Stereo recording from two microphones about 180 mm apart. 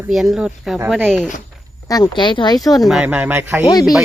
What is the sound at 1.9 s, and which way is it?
Speech, 25° left (ahead or behind).